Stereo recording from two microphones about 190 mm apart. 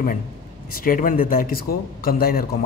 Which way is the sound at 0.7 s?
45° left (ahead or behind).